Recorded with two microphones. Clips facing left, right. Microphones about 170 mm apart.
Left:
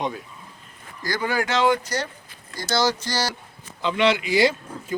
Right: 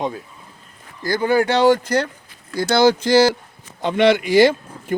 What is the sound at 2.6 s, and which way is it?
Speech, 60° right (ahead or behind).